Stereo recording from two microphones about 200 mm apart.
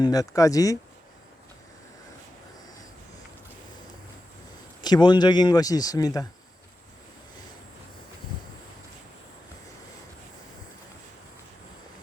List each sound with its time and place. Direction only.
0.0 s speech: 20° left (ahead or behind)
4.8 s speech: 20° left (ahead or behind)